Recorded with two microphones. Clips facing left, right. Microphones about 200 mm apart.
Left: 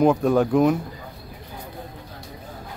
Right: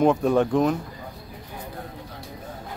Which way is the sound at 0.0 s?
Centre (ahead or behind).